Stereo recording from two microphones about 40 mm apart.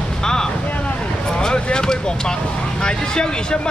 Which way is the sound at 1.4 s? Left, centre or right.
Centre.